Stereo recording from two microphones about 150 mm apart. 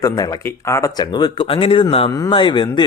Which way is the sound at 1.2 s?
35° left (ahead or behind).